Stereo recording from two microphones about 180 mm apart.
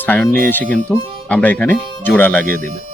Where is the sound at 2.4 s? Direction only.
50° right (ahead or behind).